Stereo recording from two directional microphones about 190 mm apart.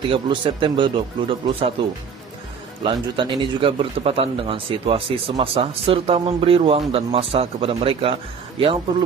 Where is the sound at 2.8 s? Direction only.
25° right (ahead or behind).